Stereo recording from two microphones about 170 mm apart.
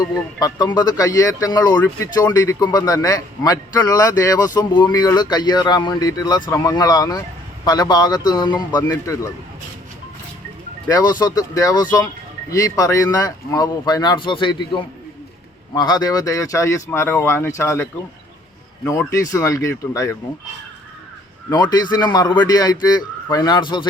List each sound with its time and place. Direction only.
0.0 s a man's voice: 20° left (ahead or behind)
10.8 s a man's voice: 20° left (ahead or behind)
18.9 s speech: 15° left (ahead or behind)
21.5 s a man's voice: 25° left (ahead or behind)